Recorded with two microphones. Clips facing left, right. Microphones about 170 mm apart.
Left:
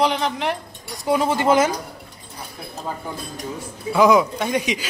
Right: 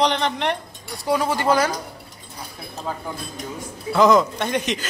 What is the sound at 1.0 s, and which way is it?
Speech, 20° left (ahead or behind).